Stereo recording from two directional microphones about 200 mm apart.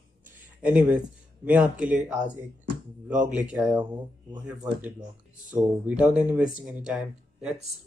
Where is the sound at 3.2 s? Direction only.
5° right (ahead or behind).